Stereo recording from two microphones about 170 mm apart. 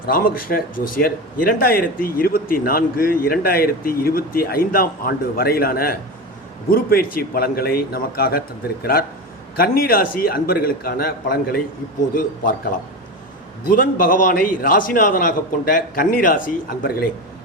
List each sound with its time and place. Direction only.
0.0 s speech: 60° left (ahead or behind)
13.7 s speech: 55° left (ahead or behind)